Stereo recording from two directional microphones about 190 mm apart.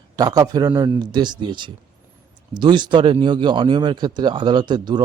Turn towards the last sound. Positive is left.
turn(degrees=-25)  # may be behind; listen again after turning